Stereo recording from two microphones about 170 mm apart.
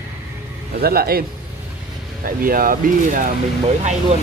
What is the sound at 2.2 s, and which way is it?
Speech, 55° right (ahead or behind).